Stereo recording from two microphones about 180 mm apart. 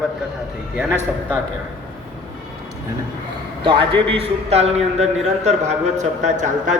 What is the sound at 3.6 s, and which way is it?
A man's voice, 30° right (ahead or behind).